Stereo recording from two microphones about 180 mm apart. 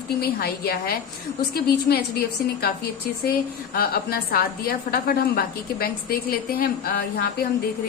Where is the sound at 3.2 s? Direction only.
55° left (ahead or behind).